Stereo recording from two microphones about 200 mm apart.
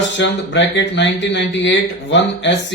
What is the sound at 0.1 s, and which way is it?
Speech, 60° left (ahead or behind).